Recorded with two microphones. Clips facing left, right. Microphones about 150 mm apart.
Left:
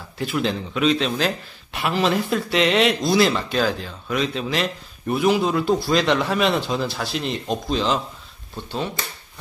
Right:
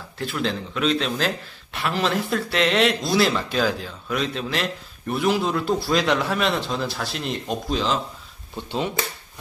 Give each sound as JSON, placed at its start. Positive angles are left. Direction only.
{"t": 0.2, "sound": "a man's voice", "side_deg": 5}
{"t": 8.5, "sound": "speech", "side_deg": -15}